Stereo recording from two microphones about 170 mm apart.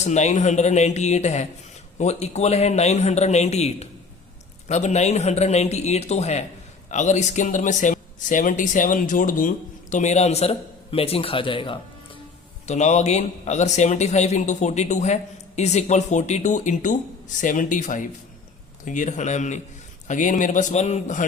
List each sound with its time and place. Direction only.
0.0 s a man's voice: 40° left (ahead or behind)
12.6 s a man's voice: 40° left (ahead or behind)